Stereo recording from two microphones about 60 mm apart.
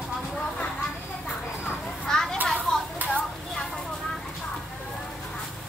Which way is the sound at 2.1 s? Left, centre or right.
Centre.